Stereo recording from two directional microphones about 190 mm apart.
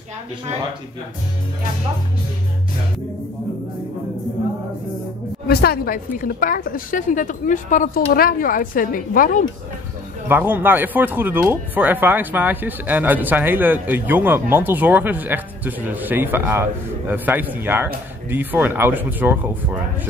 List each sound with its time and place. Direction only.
5.5 s a woman's voice: 55° left (ahead or behind)
10.2 s speech: 10° right (ahead or behind)